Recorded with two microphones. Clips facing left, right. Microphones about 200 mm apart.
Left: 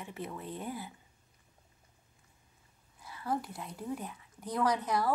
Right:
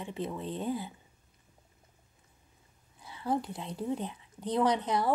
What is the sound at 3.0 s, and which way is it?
Speech, 20° right (ahead or behind).